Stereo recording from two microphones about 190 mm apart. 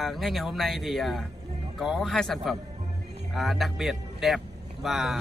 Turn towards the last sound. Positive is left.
turn(degrees=0)  # may be behind; listen again after turning